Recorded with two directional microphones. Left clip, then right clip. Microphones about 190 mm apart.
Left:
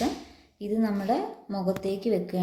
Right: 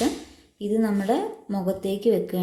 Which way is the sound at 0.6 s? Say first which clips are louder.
Right 4 dB; 25° right (ahead or behind).